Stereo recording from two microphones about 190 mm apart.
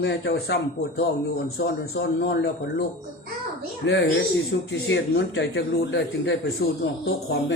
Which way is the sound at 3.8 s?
70° left (ahead or behind).